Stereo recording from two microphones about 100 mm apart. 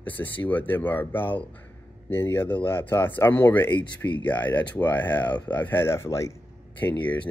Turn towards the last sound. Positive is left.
turn(degrees=15)  # may be behind; listen again after turning